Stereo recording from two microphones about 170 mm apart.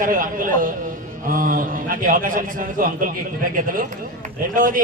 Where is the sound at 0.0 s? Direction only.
55° right (ahead or behind).